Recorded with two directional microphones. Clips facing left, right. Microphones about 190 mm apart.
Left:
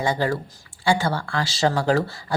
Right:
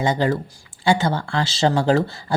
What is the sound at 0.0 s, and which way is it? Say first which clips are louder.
Speech: right 3 dB; 20° right (ahead or behind).